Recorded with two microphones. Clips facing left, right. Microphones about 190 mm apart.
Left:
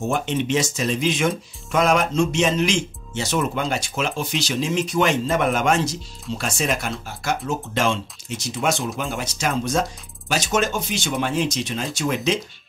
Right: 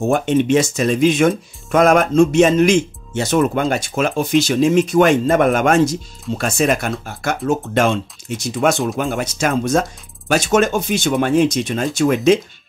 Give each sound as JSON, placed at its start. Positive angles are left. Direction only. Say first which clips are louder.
{"t": 0.1, "sound": "speech", "louder": "right 8 dB", "side_deg": -50}